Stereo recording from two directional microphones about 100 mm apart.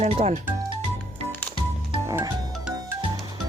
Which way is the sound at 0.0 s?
90° right.